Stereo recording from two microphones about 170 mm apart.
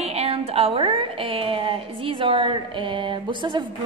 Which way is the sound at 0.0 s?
35° right (ahead or behind).